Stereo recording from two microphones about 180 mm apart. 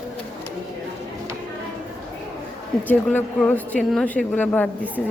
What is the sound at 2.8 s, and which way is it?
Speech, 10° left (ahead or behind).